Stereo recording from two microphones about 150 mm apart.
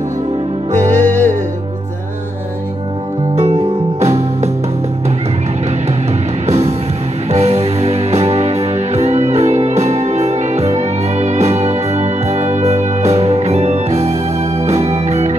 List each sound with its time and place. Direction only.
0.7 s music: 55° right (ahead or behind)
1.0 s music: 10° left (ahead or behind)
4.0 s music: 45° right (ahead or behind)
6.4 s music: 45° right (ahead or behind)